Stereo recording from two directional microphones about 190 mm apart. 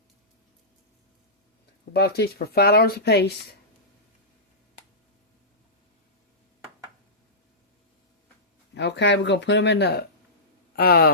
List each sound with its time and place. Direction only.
1.9 s speech: 55° left (ahead or behind)
8.7 s speech: 65° left (ahead or behind)